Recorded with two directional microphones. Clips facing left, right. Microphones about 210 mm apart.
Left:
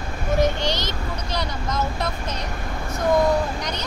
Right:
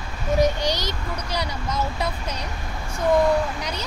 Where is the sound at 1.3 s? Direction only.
10° right (ahead or behind).